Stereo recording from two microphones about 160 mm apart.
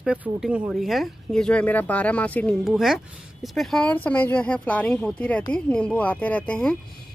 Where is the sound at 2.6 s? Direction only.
Centre (ahead or behind).